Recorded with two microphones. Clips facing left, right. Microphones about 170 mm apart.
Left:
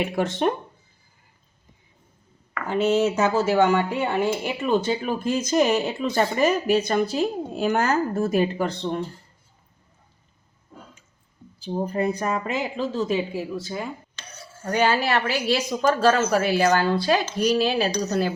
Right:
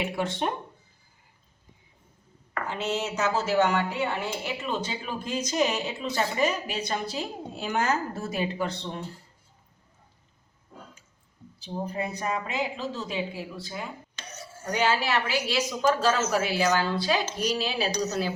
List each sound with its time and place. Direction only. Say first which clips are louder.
0.0 s speech: left 6 dB; 50° left (ahead or behind)
2.6 s speech: left 10 dB; 55° left (ahead or behind)
11.6 s speech: left 7 dB; 50° left (ahead or behind)
14.2 s cutlery: right 1 dB; 20° right (ahead or behind)
14.7 s speech: left 4 dB; 50° left (ahead or behind)